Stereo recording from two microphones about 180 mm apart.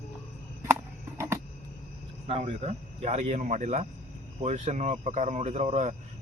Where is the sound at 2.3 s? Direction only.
35° right (ahead or behind).